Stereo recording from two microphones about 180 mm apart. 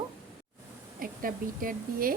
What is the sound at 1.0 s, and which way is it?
A woman's voice, 50° right (ahead or behind).